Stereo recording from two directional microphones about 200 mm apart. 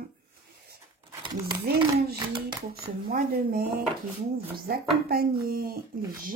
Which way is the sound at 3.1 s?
45° right (ahead or behind).